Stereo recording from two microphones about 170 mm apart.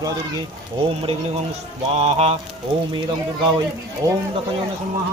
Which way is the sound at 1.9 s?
40° right (ahead or behind).